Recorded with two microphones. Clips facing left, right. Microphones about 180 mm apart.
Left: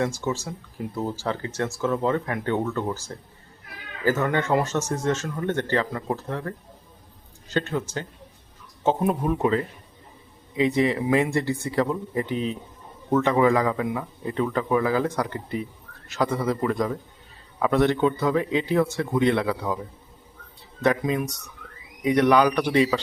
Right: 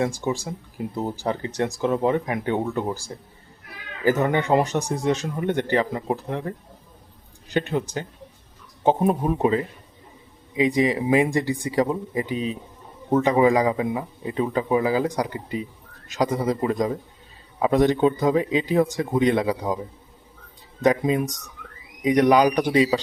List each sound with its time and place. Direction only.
0.0 s speech: 15° right (ahead or behind)
9.4 s speech: 15° right (ahead or behind)
20.8 s speech: 20° right (ahead or behind)
22.3 s speech: 15° right (ahead or behind)